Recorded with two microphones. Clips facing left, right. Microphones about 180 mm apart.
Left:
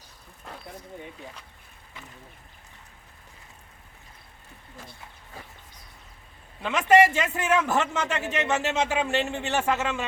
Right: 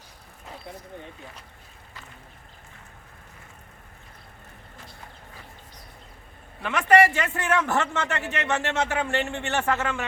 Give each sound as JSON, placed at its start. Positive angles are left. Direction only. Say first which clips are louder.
{"t": 6.6, "sound": "a man's voice", "louder": "even", "side_deg": 20}